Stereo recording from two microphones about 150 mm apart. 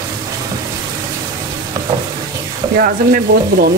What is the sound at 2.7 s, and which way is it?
Speech, 75° right (ahead or behind).